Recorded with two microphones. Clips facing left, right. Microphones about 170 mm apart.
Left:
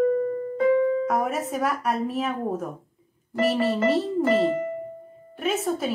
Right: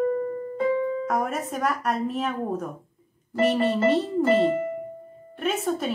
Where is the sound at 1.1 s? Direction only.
Centre (ahead or behind).